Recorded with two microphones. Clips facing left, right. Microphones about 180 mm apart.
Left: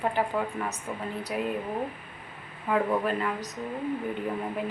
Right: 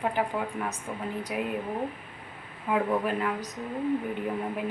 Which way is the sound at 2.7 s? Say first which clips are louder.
Left 1 dB; 5° right (ahead or behind).